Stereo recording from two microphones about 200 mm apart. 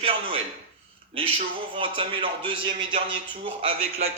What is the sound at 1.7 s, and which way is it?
Speech, 25° right (ahead or behind).